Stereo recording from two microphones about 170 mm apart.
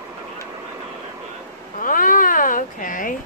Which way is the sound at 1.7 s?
55° left (ahead or behind).